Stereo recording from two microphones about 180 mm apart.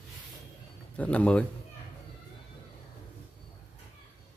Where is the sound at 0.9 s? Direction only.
5° left (ahead or behind).